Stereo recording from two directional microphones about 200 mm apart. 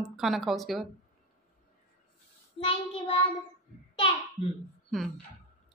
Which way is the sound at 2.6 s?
25° left (ahead or behind).